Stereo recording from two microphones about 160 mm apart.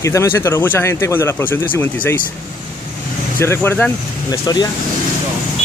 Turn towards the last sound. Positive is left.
turn(degrees=25)  # may be behind; listen again after turning